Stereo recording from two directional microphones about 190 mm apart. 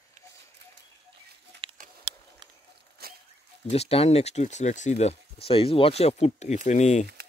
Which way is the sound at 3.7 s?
30° left (ahead or behind).